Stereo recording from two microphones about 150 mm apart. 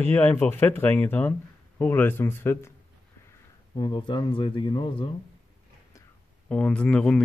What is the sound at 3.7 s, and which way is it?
Speech, 30° left (ahead or behind).